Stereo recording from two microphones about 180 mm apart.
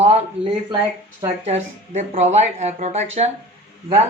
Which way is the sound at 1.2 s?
40° right (ahead or behind).